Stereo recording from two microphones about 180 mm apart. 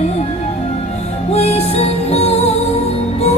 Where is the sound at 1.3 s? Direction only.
35° left (ahead or behind).